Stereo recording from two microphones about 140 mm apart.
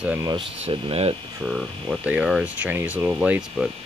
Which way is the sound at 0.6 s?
45° right (ahead or behind).